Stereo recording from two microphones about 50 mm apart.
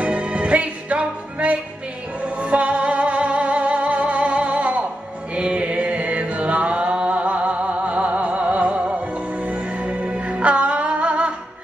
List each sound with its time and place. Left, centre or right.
0.0 s music: right